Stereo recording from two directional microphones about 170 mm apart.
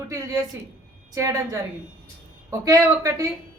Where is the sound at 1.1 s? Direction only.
20° right (ahead or behind).